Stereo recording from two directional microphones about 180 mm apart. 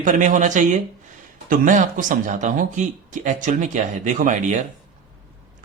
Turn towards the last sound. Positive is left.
turn(degrees=-45)  # may be behind; listen again after turning